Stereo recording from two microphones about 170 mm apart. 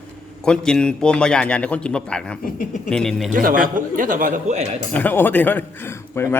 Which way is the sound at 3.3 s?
55° right (ahead or behind).